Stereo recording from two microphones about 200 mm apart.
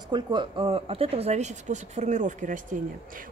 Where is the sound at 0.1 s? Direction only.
20° right (ahead or behind).